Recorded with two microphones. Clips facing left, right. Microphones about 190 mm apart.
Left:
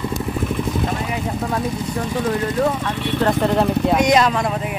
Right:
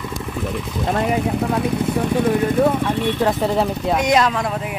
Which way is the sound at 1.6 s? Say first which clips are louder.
Right 4 dB; 60° right (ahead or behind).